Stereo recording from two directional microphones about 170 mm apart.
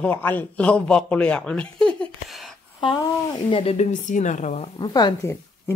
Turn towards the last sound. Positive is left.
turn(degrees=20)  # may be behind; listen again after turning